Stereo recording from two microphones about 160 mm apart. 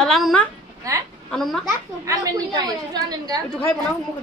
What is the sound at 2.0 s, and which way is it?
A woman's voice, 25° right (ahead or behind).